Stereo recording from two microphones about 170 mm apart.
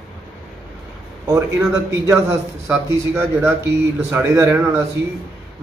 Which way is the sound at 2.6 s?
15° right (ahead or behind).